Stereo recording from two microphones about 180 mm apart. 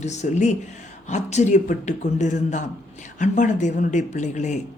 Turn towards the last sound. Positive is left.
turn(degrees=40)  # may be behind; listen again after turning